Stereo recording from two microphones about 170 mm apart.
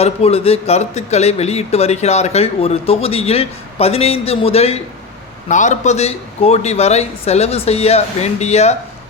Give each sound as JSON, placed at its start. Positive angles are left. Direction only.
{"t": 0.0, "sound": "a man's voice", "side_deg": 35}